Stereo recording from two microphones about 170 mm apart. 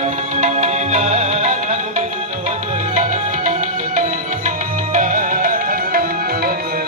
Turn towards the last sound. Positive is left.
turn(degrees=-55)  # may be behind; listen again after turning